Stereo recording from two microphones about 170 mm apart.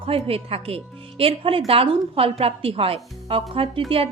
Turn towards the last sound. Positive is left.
turn(degrees=-30)  # may be behind; listen again after turning